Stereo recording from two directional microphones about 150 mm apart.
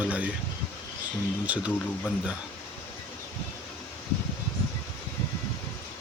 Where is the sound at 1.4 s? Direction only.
10° right (ahead or behind).